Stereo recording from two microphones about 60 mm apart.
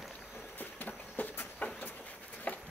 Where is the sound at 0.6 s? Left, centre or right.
Left.